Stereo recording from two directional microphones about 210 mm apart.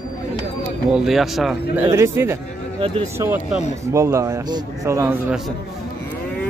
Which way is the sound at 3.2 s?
10° right (ahead or behind).